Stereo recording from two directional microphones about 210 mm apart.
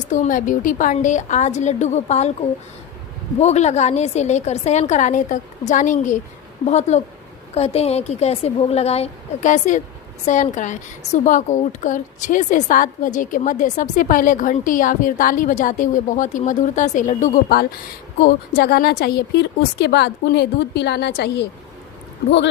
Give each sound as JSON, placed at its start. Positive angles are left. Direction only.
{"t": 0.1, "sound": "a woman's voice", "side_deg": 40}
{"t": 3.3, "sound": "a woman's voice", "side_deg": 30}